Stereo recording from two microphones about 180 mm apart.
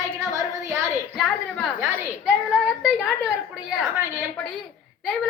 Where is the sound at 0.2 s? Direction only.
15° right (ahead or behind).